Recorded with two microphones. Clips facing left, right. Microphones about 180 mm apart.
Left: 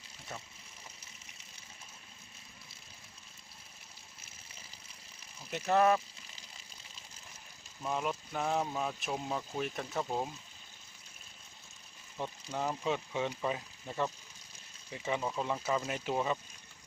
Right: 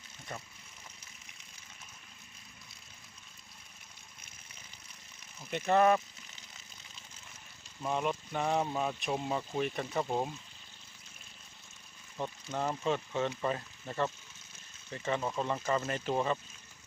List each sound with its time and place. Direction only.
5.5 s speech: 5° left (ahead or behind)
7.8 s speech: centre (ahead or behind)
12.5 s speech: 5° left (ahead or behind)